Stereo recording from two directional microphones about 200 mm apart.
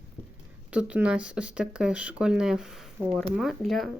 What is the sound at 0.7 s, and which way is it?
A woman's voice, 5° right (ahead or behind).